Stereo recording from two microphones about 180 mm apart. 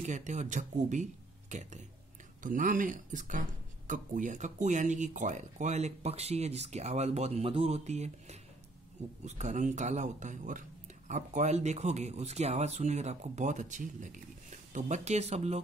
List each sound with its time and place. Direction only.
0.0 s speech: 40° right (ahead or behind)